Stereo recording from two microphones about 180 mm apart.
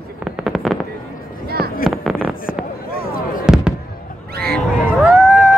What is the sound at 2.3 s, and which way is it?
Fireworks, 50° left (ahead or behind).